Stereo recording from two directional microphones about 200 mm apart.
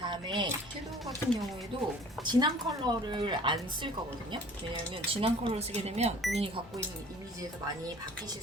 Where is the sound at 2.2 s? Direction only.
20° right (ahead or behind).